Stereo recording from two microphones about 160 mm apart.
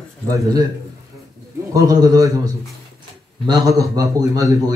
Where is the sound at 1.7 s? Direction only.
20° right (ahead or behind).